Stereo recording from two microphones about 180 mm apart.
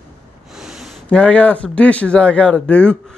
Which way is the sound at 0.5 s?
Centre (ahead or behind).